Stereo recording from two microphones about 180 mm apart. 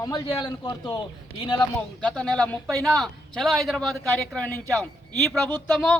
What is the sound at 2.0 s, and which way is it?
A man's voice, 5° left (ahead or behind).